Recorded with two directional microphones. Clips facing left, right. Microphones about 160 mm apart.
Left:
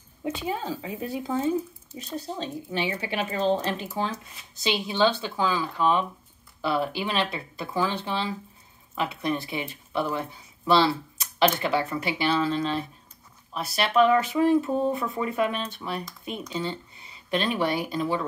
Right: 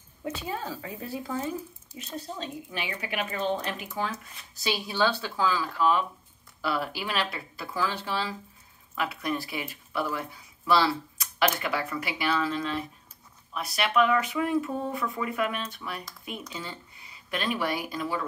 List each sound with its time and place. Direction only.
0.2 s speech: 20° left (ahead or behind)
2.1 s speech: 35° left (ahead or behind)